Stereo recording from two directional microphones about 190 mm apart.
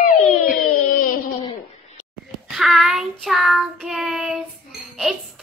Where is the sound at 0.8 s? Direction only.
45° left (ahead or behind).